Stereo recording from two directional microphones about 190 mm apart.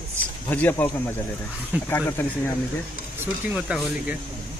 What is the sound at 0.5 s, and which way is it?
Speech, 10° left (ahead or behind).